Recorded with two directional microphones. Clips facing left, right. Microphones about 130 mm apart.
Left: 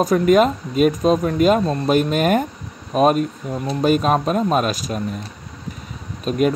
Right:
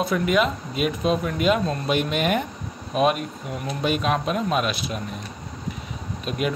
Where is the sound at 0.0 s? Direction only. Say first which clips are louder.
Left 7 dB; 40° left (ahead or behind).